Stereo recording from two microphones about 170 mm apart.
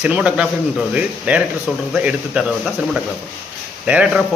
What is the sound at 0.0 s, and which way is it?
Speech, 5° right (ahead or behind).